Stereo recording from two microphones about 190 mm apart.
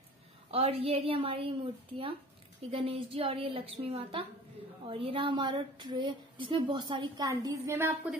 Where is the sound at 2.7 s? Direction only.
30° right (ahead or behind).